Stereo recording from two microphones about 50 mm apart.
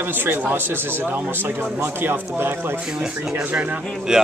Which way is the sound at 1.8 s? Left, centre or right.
Right.